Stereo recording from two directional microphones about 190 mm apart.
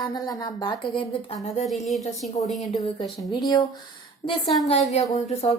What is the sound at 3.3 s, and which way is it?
Speech, 25° left (ahead or behind).